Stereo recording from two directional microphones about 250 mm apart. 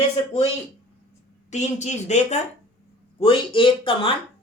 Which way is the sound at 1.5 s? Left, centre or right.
Left.